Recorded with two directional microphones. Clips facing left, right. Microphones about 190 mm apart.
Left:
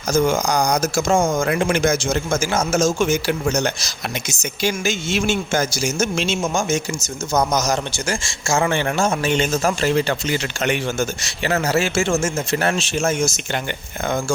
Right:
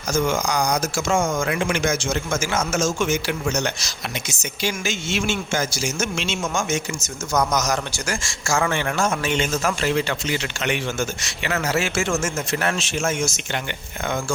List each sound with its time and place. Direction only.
0.1 s speech: 35° left (ahead or behind)